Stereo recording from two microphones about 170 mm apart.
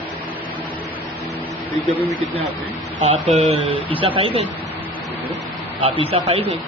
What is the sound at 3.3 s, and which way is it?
Speech, 40° right (ahead or behind).